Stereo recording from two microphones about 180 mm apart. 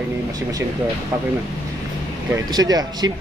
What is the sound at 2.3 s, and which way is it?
Speech, 20° right (ahead or behind).